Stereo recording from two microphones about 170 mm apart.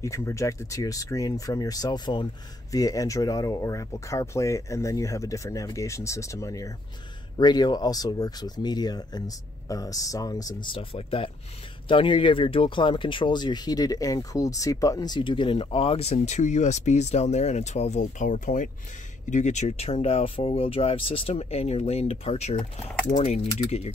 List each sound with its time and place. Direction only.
0.0 s speech: 15° left (ahead or behind); by 23.5 s 40° left (ahead or behind)